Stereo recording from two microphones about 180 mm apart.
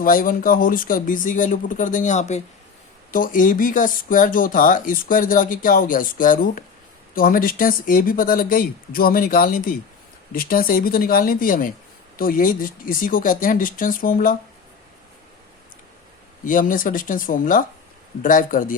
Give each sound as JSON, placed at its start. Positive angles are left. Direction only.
{"t": 0.0, "sound": "speech", "side_deg": 50}
{"t": 16.4, "sound": "speech", "side_deg": 50}